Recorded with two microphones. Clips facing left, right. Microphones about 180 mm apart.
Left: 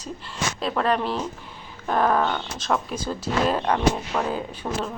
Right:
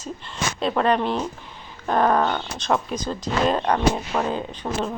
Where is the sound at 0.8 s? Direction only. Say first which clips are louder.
Right 2 dB; centre (ahead or behind).